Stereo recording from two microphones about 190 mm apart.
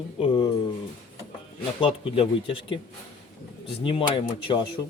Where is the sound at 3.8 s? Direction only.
25° left (ahead or behind).